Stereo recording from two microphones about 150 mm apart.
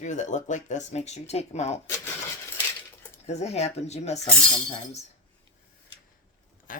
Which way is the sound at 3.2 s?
50° left (ahead or behind).